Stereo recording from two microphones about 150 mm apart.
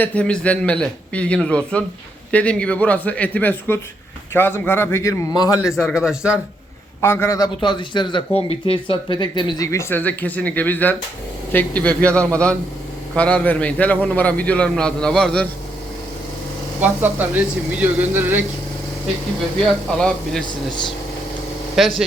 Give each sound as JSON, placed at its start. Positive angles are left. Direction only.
{"t": 0.0, "sound": "a man's voice", "side_deg": 10}
{"t": 5.5, "sound": "speech", "side_deg": 0}
{"t": 7.0, "sound": "a man's voice", "side_deg": 15}
{"t": 9.6, "sound": "a man's voice", "side_deg": 15}
{"t": 16.8, "sound": "speech", "side_deg": -10}
{"t": 20.0, "sound": "speech", "side_deg": 5}
{"t": 21.8, "sound": "speech", "side_deg": 0}